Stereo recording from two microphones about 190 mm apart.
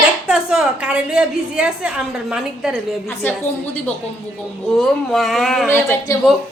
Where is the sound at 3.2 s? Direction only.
10° left (ahead or behind).